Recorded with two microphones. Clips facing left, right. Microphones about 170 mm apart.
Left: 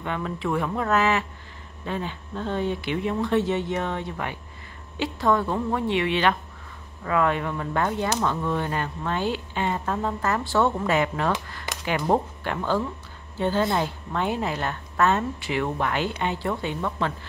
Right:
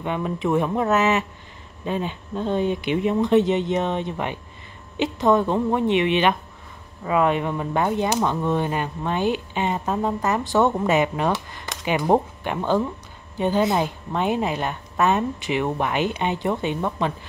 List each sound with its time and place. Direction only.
0.0 s a woman's voice: 20° right (ahead or behind)